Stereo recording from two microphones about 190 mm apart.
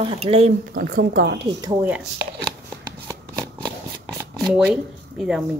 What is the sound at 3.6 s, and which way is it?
Shuffling cards, 15° right (ahead or behind).